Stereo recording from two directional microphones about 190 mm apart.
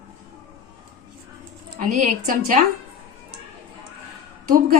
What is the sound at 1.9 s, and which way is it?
Speech, 40° right (ahead or behind).